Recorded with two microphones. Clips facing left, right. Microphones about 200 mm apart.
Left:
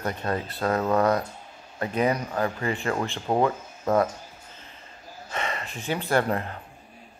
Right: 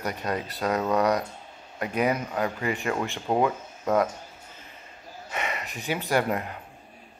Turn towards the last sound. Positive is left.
turn(degrees=-10)  # may be behind; listen again after turning